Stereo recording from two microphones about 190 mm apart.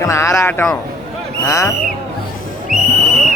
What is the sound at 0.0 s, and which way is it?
A man's voice, 15° left (ahead or behind).